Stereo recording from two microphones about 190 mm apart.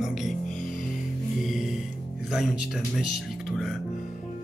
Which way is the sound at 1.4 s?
Centre (ahead or behind).